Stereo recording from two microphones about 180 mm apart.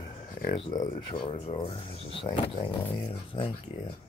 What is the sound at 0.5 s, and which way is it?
Speech, 25° left (ahead or behind).